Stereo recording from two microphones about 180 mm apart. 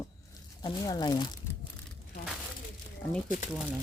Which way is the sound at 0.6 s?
25° left (ahead or behind).